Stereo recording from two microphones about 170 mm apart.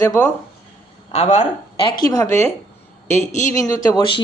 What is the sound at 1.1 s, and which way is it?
Speech, 40° left (ahead or behind).